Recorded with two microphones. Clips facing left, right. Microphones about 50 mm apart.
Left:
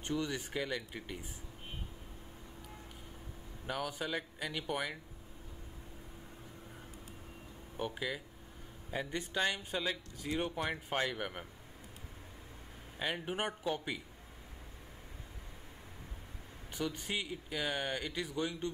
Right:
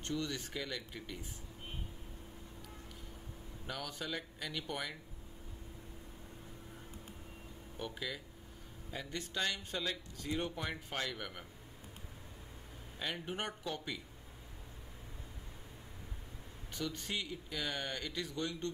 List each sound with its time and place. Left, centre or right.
0.0 s speech: centre
3.6 s speech: centre
7.7 s speech: centre
13.0 s speech: centre
16.7 s speech: centre